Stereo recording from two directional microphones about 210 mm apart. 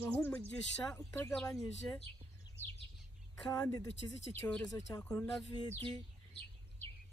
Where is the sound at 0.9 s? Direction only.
15° left (ahead or behind).